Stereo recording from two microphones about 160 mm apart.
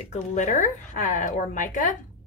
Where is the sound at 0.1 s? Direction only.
50° left (ahead or behind).